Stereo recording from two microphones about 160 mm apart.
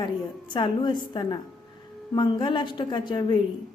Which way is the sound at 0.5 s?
30° left (ahead or behind).